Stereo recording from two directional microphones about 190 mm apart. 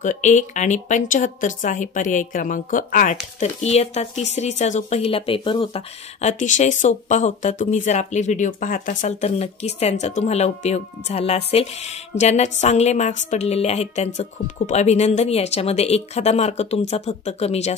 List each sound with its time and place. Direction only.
0.0 s speech: 40° left (ahead or behind)
3.3 s speech: 35° left (ahead or behind)